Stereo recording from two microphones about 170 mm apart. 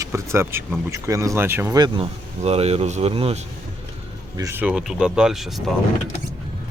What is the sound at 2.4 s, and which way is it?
Speech, 40° right (ahead or behind).